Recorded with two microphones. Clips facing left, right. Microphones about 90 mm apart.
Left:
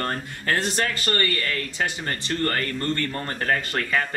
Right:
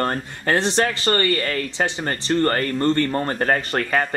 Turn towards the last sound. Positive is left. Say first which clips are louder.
# right 4 dB
turn(degrees=-35)  # may be behind; listen again after turning